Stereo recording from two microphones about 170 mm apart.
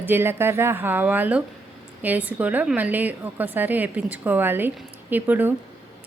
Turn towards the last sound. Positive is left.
turn(degrees=-10)  # may be behind; listen again after turning